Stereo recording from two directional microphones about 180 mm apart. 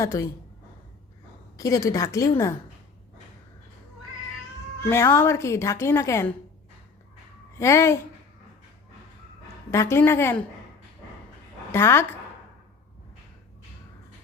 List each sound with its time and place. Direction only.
0.0 s speech: 15° left (ahead or behind)
1.5 s speech: 20° left (ahead or behind)
4.8 s speech: 15° left (ahead or behind)
7.6 s speech: 15° left (ahead or behind)
9.7 s speech: 15° left (ahead or behind)
11.7 s speech: 15° left (ahead or behind)